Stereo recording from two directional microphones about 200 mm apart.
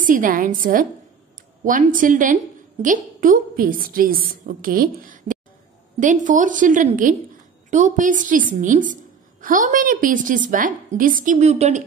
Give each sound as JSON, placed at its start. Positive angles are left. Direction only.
{"t": 0.0, "sound": "a woman's voice", "side_deg": -40}